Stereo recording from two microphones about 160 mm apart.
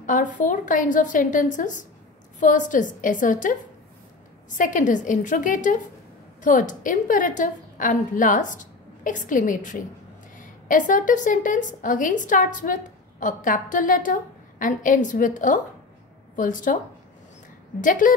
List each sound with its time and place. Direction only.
0.0 s a woman's voice: 55° left (ahead or behind)
17.7 s a woman's voice: 55° left (ahead or behind)